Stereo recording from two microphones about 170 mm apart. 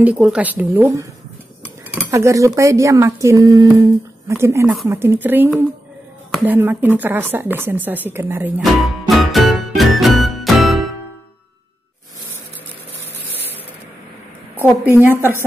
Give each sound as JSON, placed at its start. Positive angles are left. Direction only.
{"t": 0.0, "sound": "speech", "side_deg": -10}
{"t": 9.1, "sound": "music", "side_deg": 0}
{"t": 14.9, "sound": "speech", "side_deg": -10}